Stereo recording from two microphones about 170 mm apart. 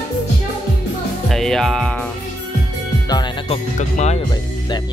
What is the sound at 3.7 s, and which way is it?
Speech, 45° left (ahead or behind).